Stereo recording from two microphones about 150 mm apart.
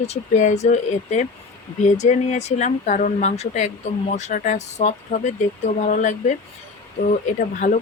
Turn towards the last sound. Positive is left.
turn(degrees=60)  # may be behind; listen again after turning